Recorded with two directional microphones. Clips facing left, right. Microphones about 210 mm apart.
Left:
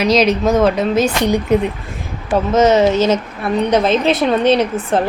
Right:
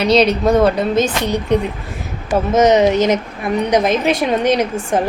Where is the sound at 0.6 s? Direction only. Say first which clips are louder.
Even; 5° left (ahead or behind).